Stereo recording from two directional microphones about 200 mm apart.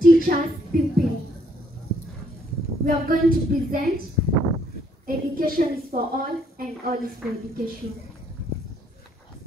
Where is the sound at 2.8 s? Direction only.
45° right (ahead or behind).